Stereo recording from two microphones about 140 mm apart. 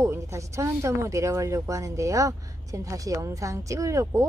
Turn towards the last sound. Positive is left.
turn(degrees=-20)  # may be behind; listen again after turning